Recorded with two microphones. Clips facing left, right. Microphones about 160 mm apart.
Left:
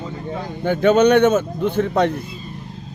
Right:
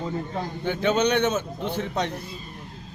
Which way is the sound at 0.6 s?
50° left (ahead or behind).